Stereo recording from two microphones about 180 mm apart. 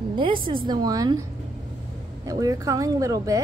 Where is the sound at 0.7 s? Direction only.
20° right (ahead or behind).